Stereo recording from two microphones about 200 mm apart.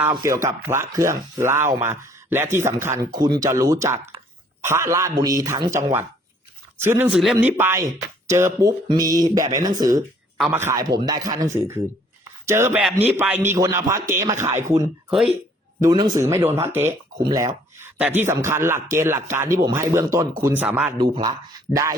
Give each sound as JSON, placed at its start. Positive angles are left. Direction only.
{"t": 0.0, "sound": "speech", "side_deg": -15}
{"t": 7.1, "sound": "speech", "side_deg": 0}
{"t": 10.3, "sound": "speech", "side_deg": -5}
{"t": 15.8, "sound": "speech", "side_deg": -20}
{"t": 21.0, "sound": "speech", "side_deg": -20}